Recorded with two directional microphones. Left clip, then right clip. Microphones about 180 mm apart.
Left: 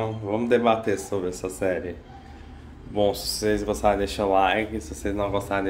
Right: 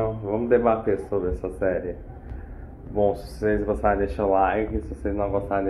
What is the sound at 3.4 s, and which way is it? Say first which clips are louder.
Speech: right 1 dB; 35° left (ahead or behind).